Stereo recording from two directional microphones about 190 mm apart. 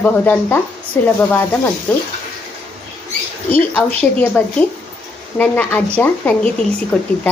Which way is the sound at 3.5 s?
10° left (ahead or behind).